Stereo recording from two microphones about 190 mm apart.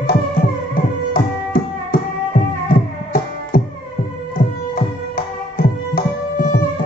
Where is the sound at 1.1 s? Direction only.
45° left (ahead or behind).